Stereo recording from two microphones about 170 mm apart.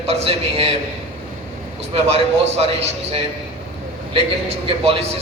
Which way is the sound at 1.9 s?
35° right (ahead or behind).